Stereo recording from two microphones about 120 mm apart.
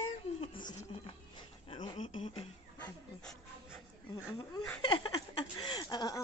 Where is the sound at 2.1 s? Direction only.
55° left (ahead or behind).